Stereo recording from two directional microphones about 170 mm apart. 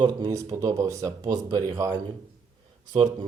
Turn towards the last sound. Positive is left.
turn(degrees=-25)  # may be behind; listen again after turning